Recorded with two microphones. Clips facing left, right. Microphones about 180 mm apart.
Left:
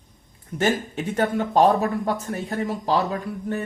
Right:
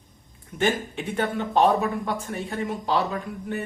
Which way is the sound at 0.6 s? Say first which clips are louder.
Left 2 dB; 45° left (ahead or behind).